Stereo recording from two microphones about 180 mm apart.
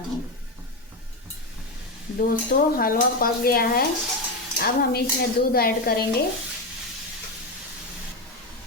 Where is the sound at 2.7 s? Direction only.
55° left (ahead or behind).